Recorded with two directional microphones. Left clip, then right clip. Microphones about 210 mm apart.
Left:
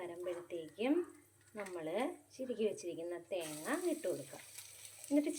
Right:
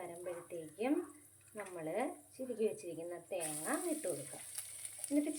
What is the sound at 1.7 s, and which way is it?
Speech, 10° left (ahead or behind).